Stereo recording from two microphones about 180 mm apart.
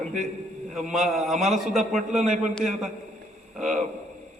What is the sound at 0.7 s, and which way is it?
A man's voice, centre (ahead or behind).